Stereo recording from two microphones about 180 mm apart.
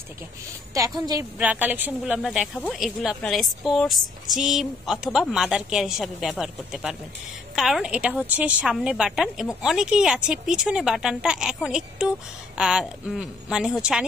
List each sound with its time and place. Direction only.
0.7 s a woman's voice: 20° right (ahead or behind)
1.4 s a woman's voice: 10° right (ahead or behind)